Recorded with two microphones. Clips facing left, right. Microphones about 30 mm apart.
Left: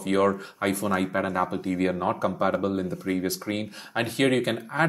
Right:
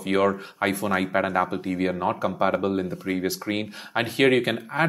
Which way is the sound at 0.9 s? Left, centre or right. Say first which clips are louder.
Right 3 dB; right.